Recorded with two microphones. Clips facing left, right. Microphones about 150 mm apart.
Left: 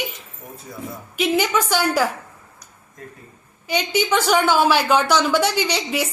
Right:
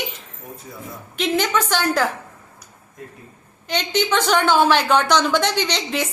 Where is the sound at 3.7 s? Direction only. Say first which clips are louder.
Left 1 dB; 10° left (ahead or behind).